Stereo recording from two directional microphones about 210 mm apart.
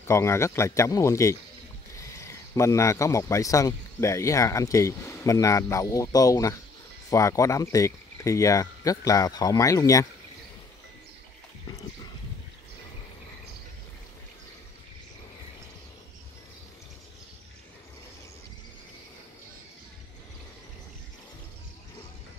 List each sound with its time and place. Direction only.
0.0 s a man's voice: 15° left (ahead or behind)